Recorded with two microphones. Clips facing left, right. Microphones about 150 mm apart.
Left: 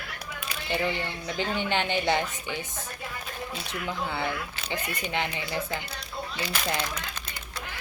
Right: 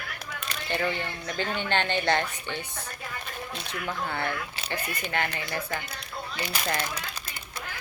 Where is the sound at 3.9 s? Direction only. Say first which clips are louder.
Even; 15° left (ahead or behind).